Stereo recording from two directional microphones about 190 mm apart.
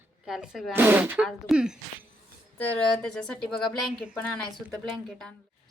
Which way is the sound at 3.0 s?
5° left (ahead or behind).